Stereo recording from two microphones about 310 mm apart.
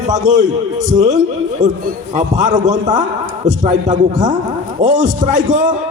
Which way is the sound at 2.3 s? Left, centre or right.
Right.